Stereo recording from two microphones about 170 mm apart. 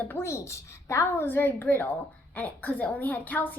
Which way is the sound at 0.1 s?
15° left (ahead or behind).